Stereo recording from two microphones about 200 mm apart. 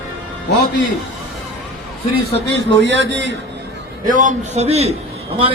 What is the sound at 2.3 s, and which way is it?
A man's voice, 65° right (ahead or behind).